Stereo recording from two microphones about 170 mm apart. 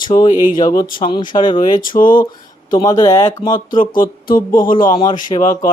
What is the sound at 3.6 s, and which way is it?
Speech, 55° left (ahead or behind).